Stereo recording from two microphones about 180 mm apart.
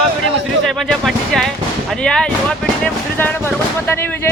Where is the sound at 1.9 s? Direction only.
5° left (ahead or behind).